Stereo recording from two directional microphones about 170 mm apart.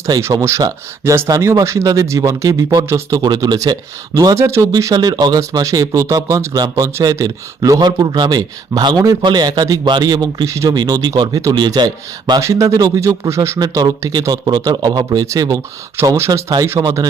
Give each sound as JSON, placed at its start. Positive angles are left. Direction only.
{"t": 0.0, "sound": "speech", "side_deg": -15}